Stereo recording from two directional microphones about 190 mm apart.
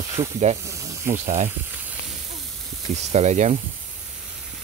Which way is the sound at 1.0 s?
40° right (ahead or behind).